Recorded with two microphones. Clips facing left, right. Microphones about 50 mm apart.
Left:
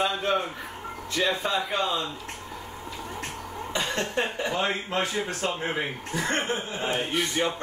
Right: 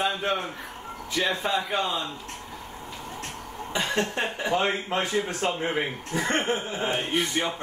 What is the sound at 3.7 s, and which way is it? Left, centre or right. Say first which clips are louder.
Speech: right 1 dB; centre.